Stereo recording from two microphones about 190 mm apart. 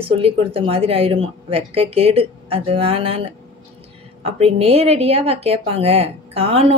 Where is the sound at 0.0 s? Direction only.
30° right (ahead or behind).